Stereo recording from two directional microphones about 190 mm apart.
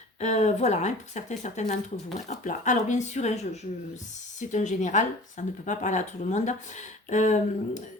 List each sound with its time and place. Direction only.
0.2 s speech: 35° left (ahead or behind)